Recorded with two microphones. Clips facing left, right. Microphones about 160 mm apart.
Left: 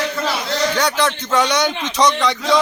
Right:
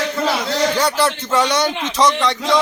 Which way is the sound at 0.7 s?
5° right (ahead or behind).